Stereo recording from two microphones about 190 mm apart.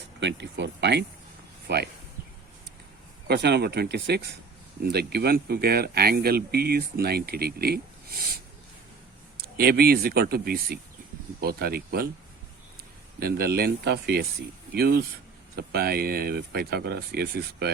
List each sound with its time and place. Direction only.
0.2 s speech: 65° right (ahead or behind)
3.2 s speech: 60° right (ahead or behind)
9.4 s speech: 55° right (ahead or behind)
13.1 s speech: 55° right (ahead or behind)